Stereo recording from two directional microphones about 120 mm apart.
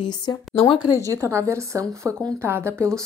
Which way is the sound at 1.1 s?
25° right (ahead or behind).